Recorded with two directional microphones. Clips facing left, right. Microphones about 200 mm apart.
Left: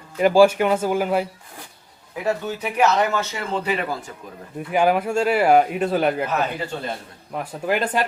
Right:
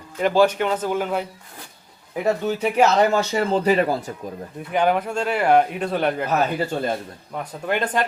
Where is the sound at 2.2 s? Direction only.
25° right (ahead or behind).